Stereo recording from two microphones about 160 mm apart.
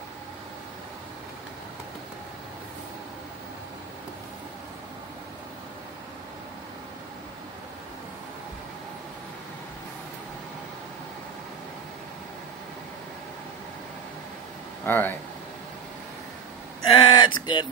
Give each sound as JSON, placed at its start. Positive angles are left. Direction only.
{"t": 14.9, "sound": "speech", "side_deg": 10}
{"t": 16.8, "sound": "speech", "side_deg": 30}